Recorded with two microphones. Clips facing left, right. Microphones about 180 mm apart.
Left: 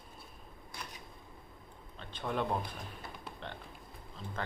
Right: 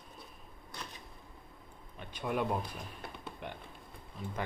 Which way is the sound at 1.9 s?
10° right (ahead or behind).